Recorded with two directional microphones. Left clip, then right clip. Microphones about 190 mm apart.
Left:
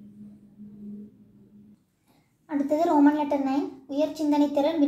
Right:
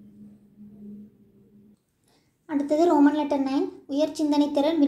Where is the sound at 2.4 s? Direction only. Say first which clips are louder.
Right 2 dB; 20° right (ahead or behind).